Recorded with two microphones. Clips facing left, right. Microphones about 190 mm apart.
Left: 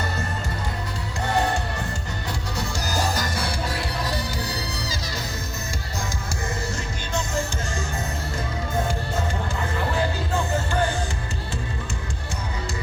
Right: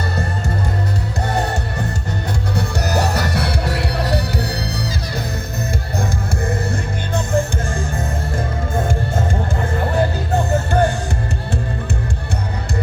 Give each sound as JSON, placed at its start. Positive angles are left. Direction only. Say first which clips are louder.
{"t": 2.6, "sound": "music", "louder": "right 7 dB", "side_deg": -65}